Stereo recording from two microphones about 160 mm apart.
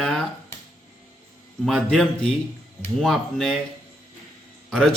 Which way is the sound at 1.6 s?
Centre (ahead or behind).